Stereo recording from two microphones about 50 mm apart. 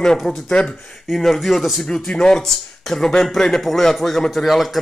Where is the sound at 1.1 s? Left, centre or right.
Centre.